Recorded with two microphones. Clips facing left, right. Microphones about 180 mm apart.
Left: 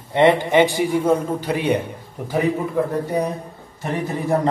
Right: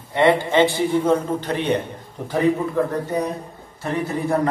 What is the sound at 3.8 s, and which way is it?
Speech, 20° left (ahead or behind).